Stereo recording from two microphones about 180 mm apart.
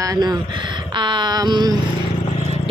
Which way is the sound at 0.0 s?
20° right (ahead or behind).